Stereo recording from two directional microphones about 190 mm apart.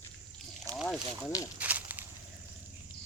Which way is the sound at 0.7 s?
Centre (ahead or behind).